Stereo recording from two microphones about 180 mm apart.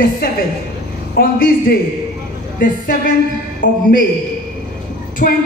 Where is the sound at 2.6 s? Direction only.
50° left (ahead or behind).